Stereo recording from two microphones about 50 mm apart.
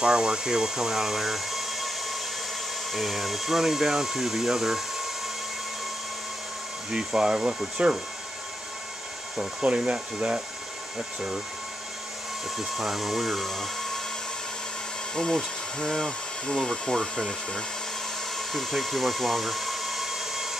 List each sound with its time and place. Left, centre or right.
0.0 s speech: centre
6.9 s speech: centre
9.8 s speech: right
12.5 s speech: centre
15.1 s speech: centre
18.3 s tools: centre